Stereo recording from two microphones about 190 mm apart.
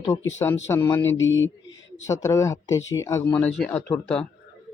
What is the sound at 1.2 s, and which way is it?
Speech, 90° left.